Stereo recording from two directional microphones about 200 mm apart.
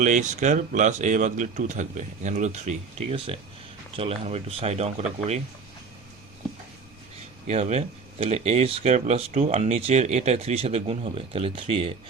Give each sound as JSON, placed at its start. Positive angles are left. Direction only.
{"t": 0.0, "sound": "speech", "side_deg": -40}
{"t": 7.4, "sound": "speech", "side_deg": -35}